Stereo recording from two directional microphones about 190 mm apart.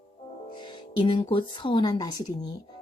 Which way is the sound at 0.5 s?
25° left (ahead or behind).